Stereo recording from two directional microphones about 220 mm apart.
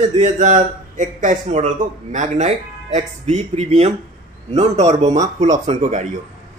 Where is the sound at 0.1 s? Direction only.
35° right (ahead or behind).